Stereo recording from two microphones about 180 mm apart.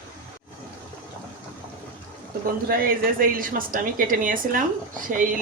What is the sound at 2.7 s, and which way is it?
A woman's voice, 55° right (ahead or behind).